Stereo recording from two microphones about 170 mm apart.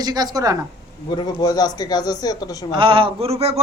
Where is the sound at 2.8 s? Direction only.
30° right (ahead or behind).